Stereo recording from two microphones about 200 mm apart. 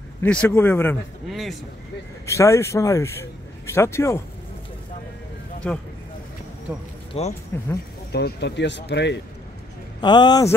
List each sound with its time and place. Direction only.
0.2 s speech: 5° left (ahead or behind)
2.2 s speech: 15° left (ahead or behind)
5.6 s speech: 5° left (ahead or behind)
7.2 s speech: 30° left (ahead or behind)
7.5 s speech: 10° left (ahead or behind)
8.1 s speech: 55° left (ahead or behind)
9.9 s speech: 20° left (ahead or behind)